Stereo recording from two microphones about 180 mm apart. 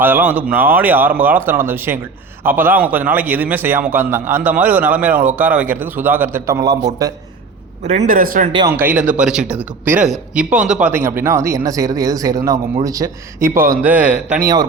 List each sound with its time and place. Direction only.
0.0 s a man's voice: 10° right (ahead or behind)
7.9 s speech: 45° right (ahead or behind)
8.5 s a man's voice: 15° right (ahead or behind)
13.8 s a man's voice: 10° right (ahead or behind)